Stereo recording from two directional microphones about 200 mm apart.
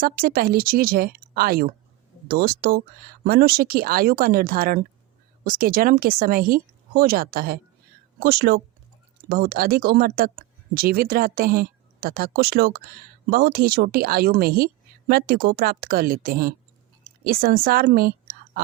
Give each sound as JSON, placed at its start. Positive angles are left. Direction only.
{"t": 0.0, "sound": "speech", "side_deg": -45}